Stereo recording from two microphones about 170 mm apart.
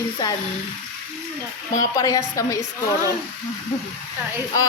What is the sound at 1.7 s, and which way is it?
Speech, 20° left (ahead or behind).